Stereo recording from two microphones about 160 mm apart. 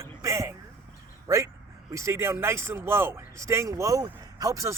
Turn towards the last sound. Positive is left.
turn(degrees=-20)  # may be behind; listen again after turning